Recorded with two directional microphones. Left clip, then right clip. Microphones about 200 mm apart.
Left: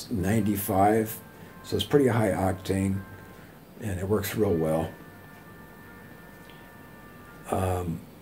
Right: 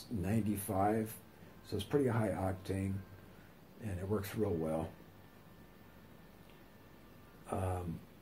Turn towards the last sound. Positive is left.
turn(degrees=5)  # may be behind; listen again after turning